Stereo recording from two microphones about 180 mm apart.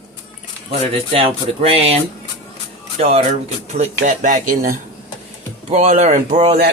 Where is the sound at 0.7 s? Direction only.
35° right (ahead or behind).